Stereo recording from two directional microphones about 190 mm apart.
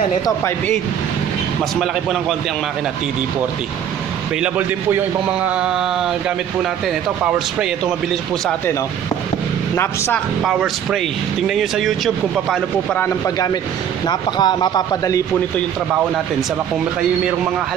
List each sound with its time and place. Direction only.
4.4 s a man's voice: 10° right (ahead or behind)
9.8 s speech: 15° left (ahead or behind)
10.4 s speech: 5° right (ahead or behind)
13.0 s speech: 20° left (ahead or behind)